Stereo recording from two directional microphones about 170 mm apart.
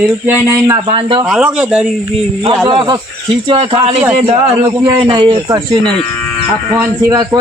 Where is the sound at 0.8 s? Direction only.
30° right (ahead or behind).